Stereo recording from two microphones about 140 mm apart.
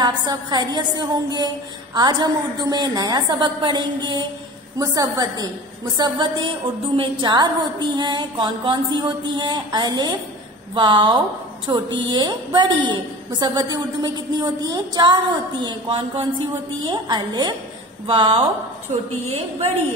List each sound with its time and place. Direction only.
0.0 s a woman's voice: 30° right (ahead or behind)